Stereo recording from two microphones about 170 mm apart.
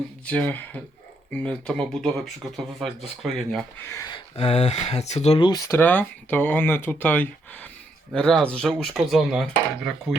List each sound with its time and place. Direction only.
0.3 s speech: 5° left (ahead or behind)
3.8 s speech: 15° left (ahead or behind)
4.1 s speech: 35° left (ahead or behind)
5.5 s speech: 20° left (ahead or behind); by 9.9 s centre (ahead or behind)